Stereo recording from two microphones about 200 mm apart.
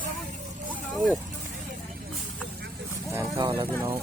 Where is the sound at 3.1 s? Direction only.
15° right (ahead or behind).